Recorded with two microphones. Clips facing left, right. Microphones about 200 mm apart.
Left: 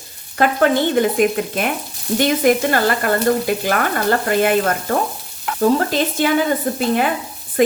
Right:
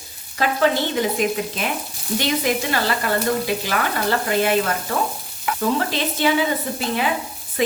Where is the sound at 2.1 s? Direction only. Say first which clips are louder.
Left 6 dB; 50° left (ahead or behind).